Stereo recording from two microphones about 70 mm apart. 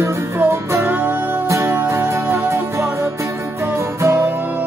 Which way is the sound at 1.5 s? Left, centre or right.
Right.